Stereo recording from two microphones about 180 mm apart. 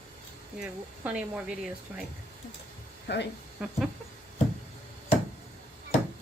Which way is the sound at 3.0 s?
75° left (ahead or behind).